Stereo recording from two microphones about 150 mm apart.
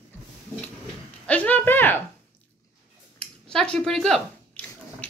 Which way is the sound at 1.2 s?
10° left (ahead or behind).